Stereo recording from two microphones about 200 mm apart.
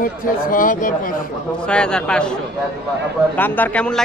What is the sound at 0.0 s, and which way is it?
Speech, 45° left (ahead or behind).